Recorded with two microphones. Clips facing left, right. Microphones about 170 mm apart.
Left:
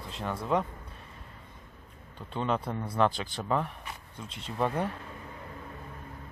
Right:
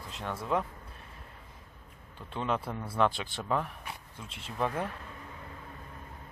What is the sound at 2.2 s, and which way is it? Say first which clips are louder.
Speech: left 2 dB; centre (ahead or behind).